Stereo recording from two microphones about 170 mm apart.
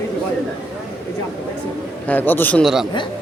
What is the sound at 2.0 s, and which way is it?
Speech, 10° left (ahead or behind).